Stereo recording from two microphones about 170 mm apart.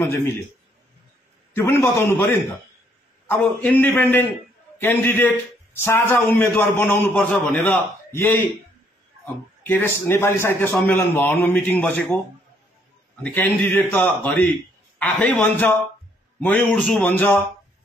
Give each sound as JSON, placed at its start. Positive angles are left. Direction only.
{"t": 1.5, "sound": "a man's voice", "side_deg": 15}
{"t": 3.3, "sound": "a man's voice", "side_deg": 10}
{"t": 13.2, "sound": "a man's voice", "side_deg": 10}